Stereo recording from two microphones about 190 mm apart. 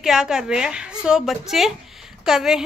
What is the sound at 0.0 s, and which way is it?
A woman's voice, 5° right (ahead or behind).